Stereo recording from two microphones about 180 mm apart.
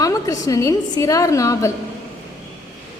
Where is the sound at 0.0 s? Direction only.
20° left (ahead or behind).